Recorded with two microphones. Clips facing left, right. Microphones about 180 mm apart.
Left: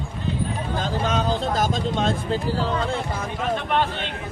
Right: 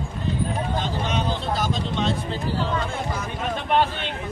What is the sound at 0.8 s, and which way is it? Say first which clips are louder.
Speech: left 6 dB; 45° left (ahead or behind).